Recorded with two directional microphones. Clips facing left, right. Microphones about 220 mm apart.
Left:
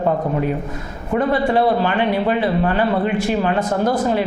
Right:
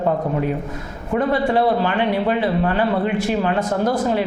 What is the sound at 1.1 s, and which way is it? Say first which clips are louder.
A man's voice: left 1 dB; 20° left (ahead or behind).